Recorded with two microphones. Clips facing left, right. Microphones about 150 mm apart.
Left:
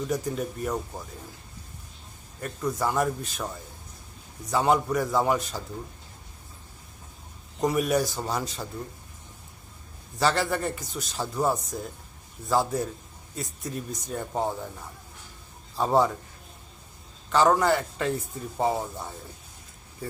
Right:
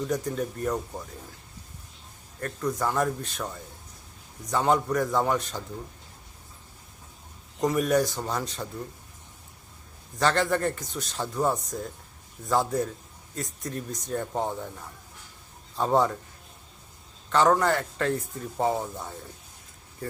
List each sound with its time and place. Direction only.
0.1 s speech: 5° left (ahead or behind)
2.4 s speech: 5° left (ahead or behind)
7.6 s speech: 10° left (ahead or behind)
10.2 s a man's voice: 5° left (ahead or behind)
17.2 s speech: 5° left (ahead or behind)